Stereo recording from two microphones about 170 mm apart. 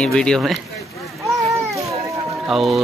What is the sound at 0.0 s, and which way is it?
Speech, 5° left (ahead or behind).